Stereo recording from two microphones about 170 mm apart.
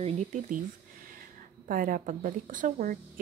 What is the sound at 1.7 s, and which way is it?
A woman's voice, 55° right (ahead or behind).